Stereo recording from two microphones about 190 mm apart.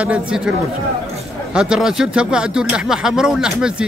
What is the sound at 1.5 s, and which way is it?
Speech, 5° right (ahead or behind).